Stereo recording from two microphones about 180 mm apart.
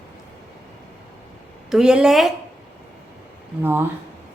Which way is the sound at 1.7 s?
5° right (ahead or behind).